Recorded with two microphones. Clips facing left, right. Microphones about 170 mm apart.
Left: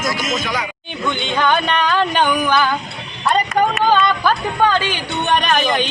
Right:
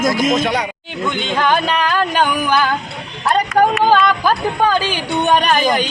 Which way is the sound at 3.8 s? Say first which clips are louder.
Right 2 dB; 10° right (ahead or behind).